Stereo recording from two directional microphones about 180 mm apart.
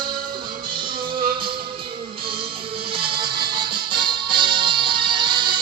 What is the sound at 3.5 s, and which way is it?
Music, 25° right (ahead or behind).